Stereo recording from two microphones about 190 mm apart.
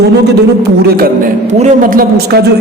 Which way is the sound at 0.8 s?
50° right (ahead or behind).